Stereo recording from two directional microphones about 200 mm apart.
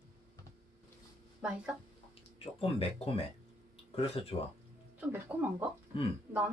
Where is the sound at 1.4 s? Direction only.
5° right (ahead or behind).